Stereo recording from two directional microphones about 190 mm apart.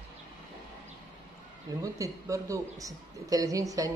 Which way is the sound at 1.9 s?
15° right (ahead or behind).